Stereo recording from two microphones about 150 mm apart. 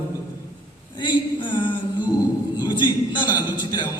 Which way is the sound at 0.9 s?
30° left (ahead or behind).